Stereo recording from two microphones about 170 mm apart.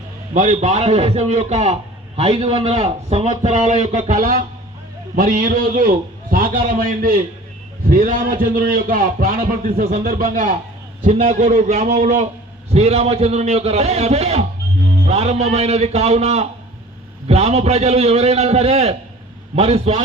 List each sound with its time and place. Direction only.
0.3 s a man's voice: 45° right (ahead or behind)